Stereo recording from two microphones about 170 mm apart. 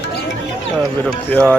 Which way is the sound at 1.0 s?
10° left (ahead or behind).